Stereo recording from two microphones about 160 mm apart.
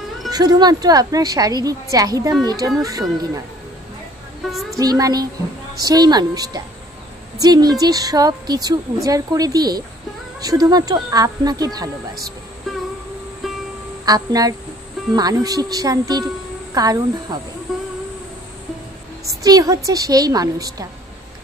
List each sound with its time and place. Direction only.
0.3 s a woman's voice: 25° right (ahead or behind)
4.5 s a woman's voice: centre (ahead or behind)
4.7 s a woman's voice: 20° right (ahead or behind)
14.0 s a woman's voice: 25° right (ahead or behind)
17.7 s a sound: centre (ahead or behind)
19.2 s a woman's voice: 25° right (ahead or behind)